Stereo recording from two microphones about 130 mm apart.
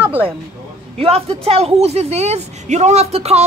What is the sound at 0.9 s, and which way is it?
Speech, 50° right (ahead or behind).